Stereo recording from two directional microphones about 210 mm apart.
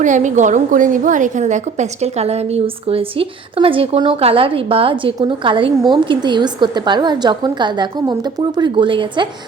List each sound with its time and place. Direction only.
0.0 s a woman's voice: 35° right (ahead or behind)